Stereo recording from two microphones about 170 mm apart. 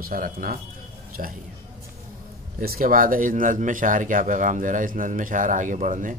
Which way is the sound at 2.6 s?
60° right (ahead or behind).